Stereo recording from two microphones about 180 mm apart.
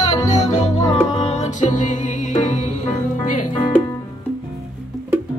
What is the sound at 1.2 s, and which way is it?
Music, 40° left (ahead or behind).